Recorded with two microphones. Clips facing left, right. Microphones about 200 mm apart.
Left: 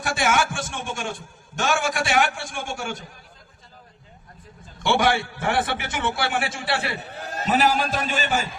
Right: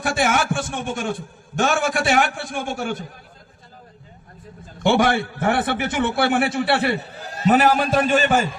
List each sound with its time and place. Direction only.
0.2 s a man's voice: 55° right (ahead or behind)
4.8 s a man's voice: 55° right (ahead or behind)